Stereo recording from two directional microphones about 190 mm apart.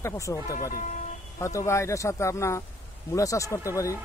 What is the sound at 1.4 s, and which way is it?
Speech, 15° left (ahead or behind).